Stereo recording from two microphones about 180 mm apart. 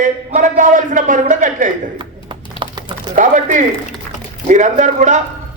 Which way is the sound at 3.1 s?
45° right (ahead or behind).